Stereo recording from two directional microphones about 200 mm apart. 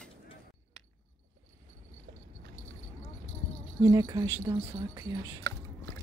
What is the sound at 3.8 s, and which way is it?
Speech, 20° right (ahead or behind).